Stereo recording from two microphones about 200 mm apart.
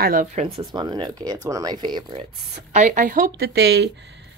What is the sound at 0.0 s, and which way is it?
Speech, 45° right (ahead or behind).